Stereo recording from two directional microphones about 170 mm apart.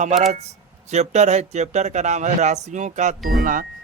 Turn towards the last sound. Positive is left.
turn(degrees=-55)  # may be behind; listen again after turning